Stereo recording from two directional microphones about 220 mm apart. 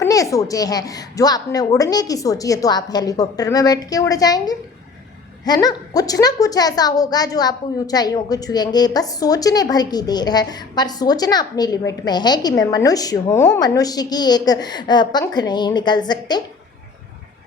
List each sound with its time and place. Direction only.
0.0 s a woman's voice: 15° left (ahead or behind)